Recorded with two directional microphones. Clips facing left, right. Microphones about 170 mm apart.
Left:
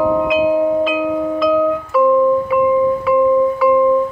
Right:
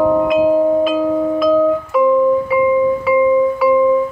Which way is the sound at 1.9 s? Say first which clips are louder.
Left 3 dB; 15° right (ahead or behind).